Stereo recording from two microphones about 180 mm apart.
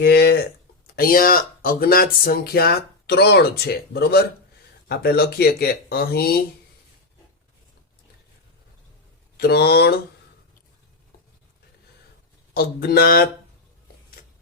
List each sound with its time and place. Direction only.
0.0 s speech: 65° left (ahead or behind)
0.9 s speech: 55° left (ahead or behind)
9.4 s speech: 65° left (ahead or behind)
12.5 s speech: 55° left (ahead or behind)